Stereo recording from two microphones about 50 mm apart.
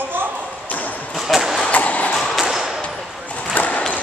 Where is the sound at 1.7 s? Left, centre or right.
Left.